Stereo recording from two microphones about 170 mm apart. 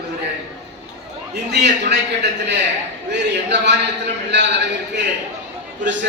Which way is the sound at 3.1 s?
90° right.